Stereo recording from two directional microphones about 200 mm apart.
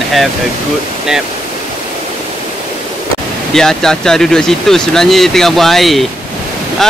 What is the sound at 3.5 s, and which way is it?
Speech, 5° left (ahead or behind).